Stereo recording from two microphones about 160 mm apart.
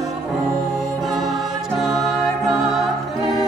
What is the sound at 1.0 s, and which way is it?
Music, centre (ahead or behind).